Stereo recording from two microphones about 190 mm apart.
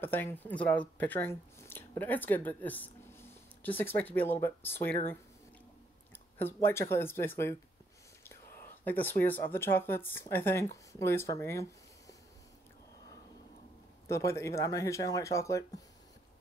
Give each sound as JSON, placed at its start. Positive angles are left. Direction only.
{"t": 0.0, "sound": "speech", "side_deg": 10}
{"t": 6.3, "sound": "speech", "side_deg": 10}
{"t": 8.8, "sound": "speech", "side_deg": 10}
{"t": 14.0, "sound": "speech", "side_deg": 15}